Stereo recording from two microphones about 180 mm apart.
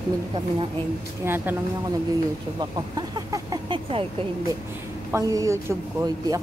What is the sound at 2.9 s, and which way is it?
Speech, 20° right (ahead or behind).